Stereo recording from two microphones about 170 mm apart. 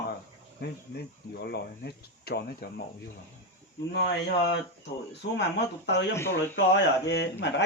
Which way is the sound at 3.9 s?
85° left.